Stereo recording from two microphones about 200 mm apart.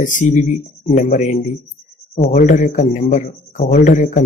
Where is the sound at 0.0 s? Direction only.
40° left (ahead or behind).